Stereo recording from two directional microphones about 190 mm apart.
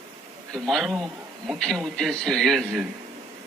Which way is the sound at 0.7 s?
Centre (ahead or behind).